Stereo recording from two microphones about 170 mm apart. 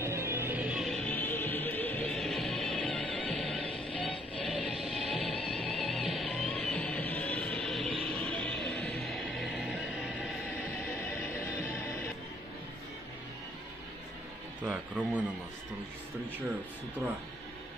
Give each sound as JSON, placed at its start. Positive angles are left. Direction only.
{"t": 0.0, "sound": "music", "side_deg": -15}
{"t": 11.0, "sound": "music", "side_deg": 15}
{"t": 14.6, "sound": "a sound", "side_deg": -10}
{"t": 16.3, "sound": "speech", "side_deg": -10}